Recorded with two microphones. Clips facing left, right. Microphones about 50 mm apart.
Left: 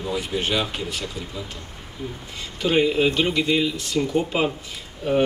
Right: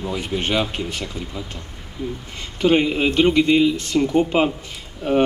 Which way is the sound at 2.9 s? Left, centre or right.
Right.